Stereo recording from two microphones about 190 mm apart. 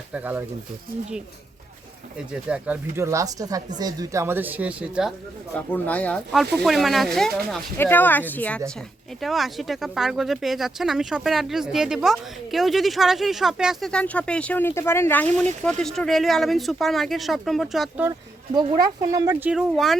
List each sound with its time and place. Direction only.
0.1 s speech: 10° right (ahead or behind)
2.1 s speech: 5° right (ahead or behind)
5.5 s speech: 10° left (ahead or behind)
19.0 s speech: 20° right (ahead or behind)
19.5 s speech: centre (ahead or behind)